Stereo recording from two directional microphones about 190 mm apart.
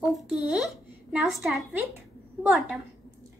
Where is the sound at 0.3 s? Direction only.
5° right (ahead or behind).